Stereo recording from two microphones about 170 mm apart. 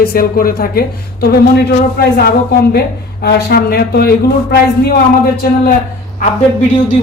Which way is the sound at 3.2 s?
70° left (ahead or behind).